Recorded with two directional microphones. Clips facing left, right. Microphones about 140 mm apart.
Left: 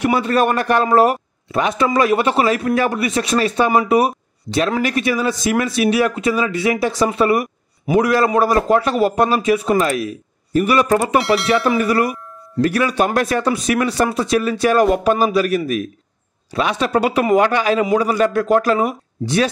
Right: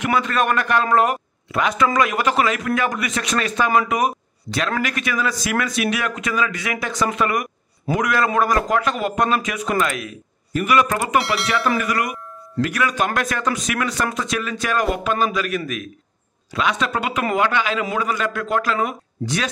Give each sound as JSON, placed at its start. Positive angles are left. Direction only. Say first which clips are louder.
{"t": 0.2, "sound": "a man's voice", "louder": "left 4 dB", "side_deg": 35}
{"t": 11.1, "sound": "speech", "louder": "left 5 dB", "side_deg": 0}
{"t": 11.8, "sound": "a man's voice", "louder": "left 6 dB", "side_deg": 30}